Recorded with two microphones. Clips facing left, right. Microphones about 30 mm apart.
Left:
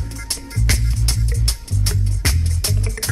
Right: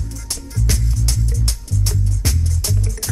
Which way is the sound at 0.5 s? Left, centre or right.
Left.